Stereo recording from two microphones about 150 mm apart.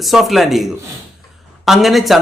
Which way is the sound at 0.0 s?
Centre (ahead or behind).